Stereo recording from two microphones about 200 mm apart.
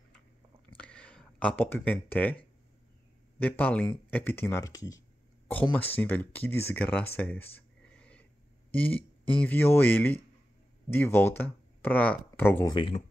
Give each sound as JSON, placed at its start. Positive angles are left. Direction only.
{"t": 0.7, "sound": "speech", "side_deg": 5}
{"t": 12.7, "sound": "speech", "side_deg": 25}